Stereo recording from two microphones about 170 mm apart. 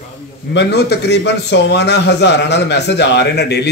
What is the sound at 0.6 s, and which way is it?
A man's voice, 80° left.